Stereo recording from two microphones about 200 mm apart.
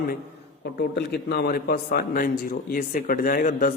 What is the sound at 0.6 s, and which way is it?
A man's voice, 55° left (ahead or behind).